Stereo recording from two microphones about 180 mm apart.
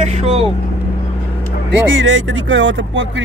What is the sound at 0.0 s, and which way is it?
Speech, 35° right (ahead or behind).